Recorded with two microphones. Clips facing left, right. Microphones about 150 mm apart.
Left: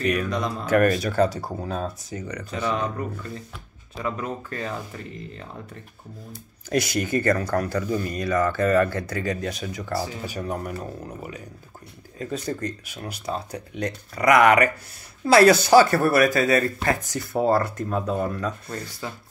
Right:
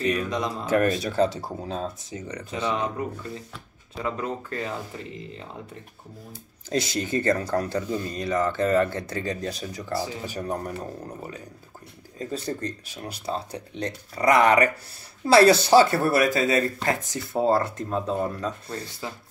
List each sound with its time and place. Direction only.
0.0 s speech: 25° right (ahead or behind)
2.2 s speech: 25° right (ahead or behind)
6.7 s speech: 25° right (ahead or behind)